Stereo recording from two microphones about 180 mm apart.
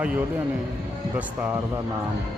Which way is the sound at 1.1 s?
10° right (ahead or behind).